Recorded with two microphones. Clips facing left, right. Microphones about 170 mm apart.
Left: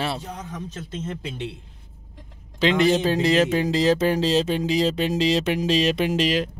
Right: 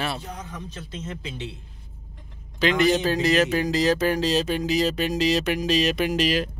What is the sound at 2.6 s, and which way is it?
Speech, 25° left (ahead or behind).